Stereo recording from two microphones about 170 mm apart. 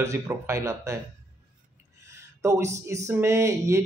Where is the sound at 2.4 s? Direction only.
15° right (ahead or behind).